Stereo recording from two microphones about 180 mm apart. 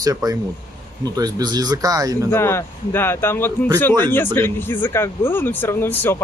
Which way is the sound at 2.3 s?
15° left (ahead or behind).